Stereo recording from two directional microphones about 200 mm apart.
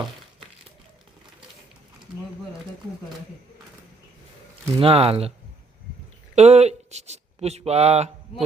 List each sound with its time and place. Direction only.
4.8 s speech: 30° right (ahead or behind)
6.3 s speech: 35° right (ahead or behind)